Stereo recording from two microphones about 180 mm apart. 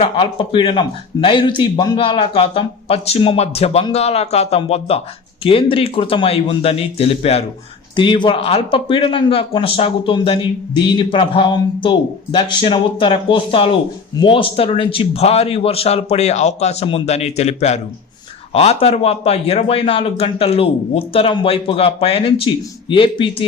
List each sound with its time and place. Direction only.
0.0 s speech: 30° left (ahead or behind)